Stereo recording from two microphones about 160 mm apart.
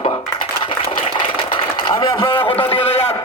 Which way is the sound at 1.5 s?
30° left (ahead or behind).